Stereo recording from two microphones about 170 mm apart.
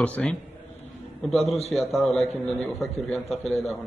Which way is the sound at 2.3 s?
10° left (ahead or behind).